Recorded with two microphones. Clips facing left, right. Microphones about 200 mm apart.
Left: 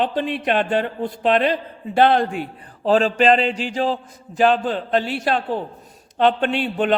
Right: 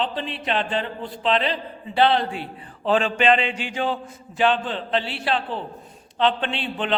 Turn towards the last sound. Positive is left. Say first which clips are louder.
# left 6 dB
turn(degrees=45)  # may be behind; listen again after turning